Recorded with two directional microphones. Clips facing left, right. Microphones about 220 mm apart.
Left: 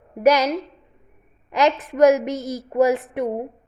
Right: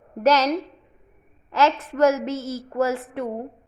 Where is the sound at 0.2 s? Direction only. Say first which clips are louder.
Left 2 dB; 10° left (ahead or behind).